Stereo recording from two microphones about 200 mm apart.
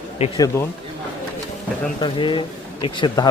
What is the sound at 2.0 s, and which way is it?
Speech, 25° left (ahead or behind).